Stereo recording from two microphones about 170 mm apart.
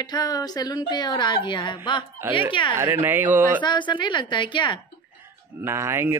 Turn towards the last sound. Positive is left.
turn(degrees=-15)  # may be behind; listen again after turning